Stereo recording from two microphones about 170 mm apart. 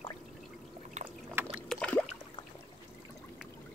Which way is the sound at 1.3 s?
10° right (ahead or behind).